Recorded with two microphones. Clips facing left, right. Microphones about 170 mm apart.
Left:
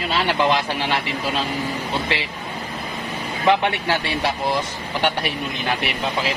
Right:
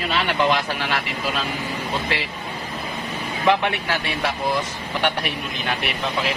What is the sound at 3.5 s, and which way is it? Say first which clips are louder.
Speech: left 2 dB; 30° left (ahead or behind).